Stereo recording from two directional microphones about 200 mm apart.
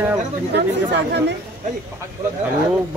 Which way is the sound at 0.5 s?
60° right (ahead or behind).